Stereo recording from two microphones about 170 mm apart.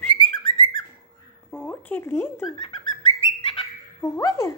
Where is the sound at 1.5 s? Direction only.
10° left (ahead or behind).